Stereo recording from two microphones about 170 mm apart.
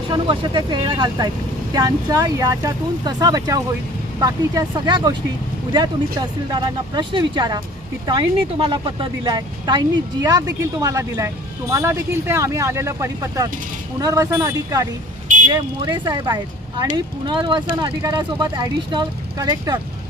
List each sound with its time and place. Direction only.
0.1 s speech: 25° right (ahead or behind)
15.3 s a sound: 50° right (ahead or behind)
15.8 s speech: 25° right (ahead or behind)